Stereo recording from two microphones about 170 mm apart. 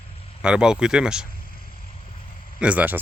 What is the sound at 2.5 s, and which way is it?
Speech, 5° right (ahead or behind).